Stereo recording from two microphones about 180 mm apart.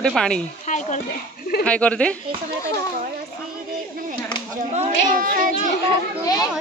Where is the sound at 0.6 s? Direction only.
40° left (ahead or behind).